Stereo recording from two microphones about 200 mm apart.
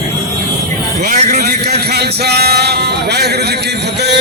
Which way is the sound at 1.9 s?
55° right (ahead or behind).